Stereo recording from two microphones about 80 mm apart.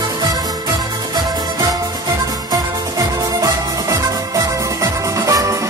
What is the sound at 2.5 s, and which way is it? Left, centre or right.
Music, right.